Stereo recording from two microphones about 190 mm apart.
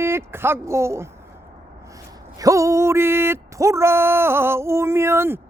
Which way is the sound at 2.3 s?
15° right (ahead or behind).